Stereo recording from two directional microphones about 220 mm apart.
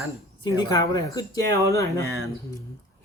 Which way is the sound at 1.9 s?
15° right (ahead or behind).